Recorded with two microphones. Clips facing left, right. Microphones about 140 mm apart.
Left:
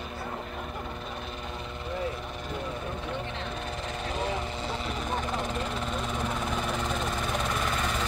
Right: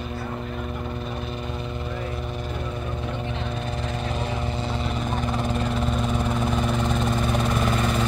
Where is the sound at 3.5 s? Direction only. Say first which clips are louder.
Right 5 dB; centre (ahead or behind).